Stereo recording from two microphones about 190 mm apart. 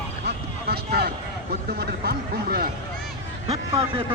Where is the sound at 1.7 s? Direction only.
55° right (ahead or behind).